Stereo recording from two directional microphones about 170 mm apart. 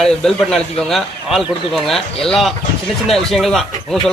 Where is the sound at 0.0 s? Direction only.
5° left (ahead or behind).